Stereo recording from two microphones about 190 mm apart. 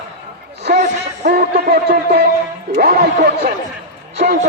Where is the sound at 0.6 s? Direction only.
40° right (ahead or behind).